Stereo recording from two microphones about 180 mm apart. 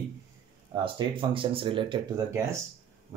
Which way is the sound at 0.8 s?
30° right (ahead or behind).